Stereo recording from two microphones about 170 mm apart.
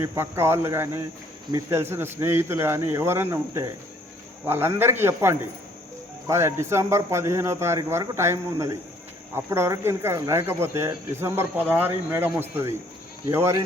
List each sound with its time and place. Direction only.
0.0 s speech: 15° right (ahead or behind)